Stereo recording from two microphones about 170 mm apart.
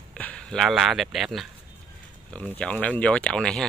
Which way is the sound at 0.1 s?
5° left (ahead or behind).